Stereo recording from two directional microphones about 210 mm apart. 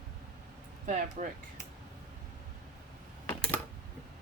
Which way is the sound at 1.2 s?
40° right (ahead or behind).